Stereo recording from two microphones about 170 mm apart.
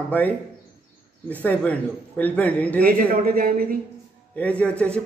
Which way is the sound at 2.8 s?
60° right (ahead or behind).